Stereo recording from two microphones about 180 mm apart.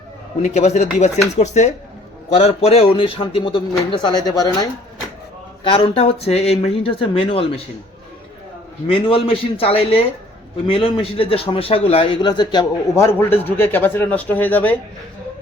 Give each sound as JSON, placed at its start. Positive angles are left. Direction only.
{"t": 0.5, "sound": "a man's voice", "side_deg": 40}
{"t": 8.9, "sound": "a man's voice", "side_deg": 30}